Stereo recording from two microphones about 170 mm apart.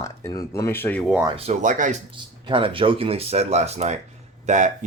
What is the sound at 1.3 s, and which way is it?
Speech, 40° right (ahead or behind).